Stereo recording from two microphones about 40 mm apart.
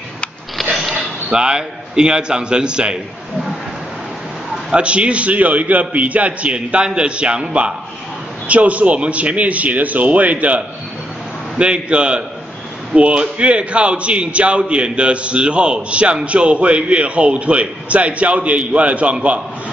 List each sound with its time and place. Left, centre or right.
0.6 s a sound: centre
1.3 s a man's voice: right
4.6 s a man's voice: right